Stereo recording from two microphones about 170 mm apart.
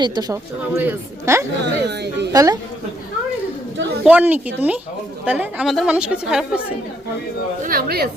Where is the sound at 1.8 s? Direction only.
80° right.